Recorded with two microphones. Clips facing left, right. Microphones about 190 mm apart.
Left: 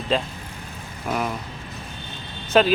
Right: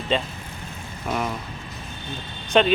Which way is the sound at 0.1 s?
Centre (ahead or behind).